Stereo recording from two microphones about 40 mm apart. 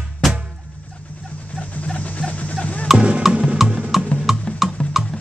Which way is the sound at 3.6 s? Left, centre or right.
Right.